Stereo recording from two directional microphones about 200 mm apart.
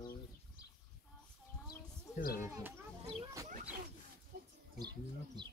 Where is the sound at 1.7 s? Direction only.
45° left (ahead or behind).